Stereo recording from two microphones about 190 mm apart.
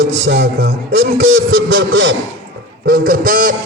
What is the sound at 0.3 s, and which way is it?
A man's voice, 60° right (ahead or behind).